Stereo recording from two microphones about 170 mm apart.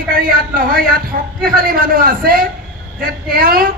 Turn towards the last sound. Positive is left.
turn(degrees=-60)  # may be behind; listen again after turning